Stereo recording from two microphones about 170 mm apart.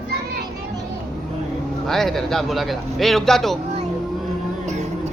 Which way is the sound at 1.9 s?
Centre (ahead or behind).